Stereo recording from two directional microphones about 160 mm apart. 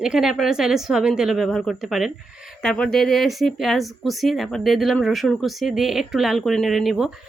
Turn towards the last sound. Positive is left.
turn(degrees=0)  # may be behind; listen again after turning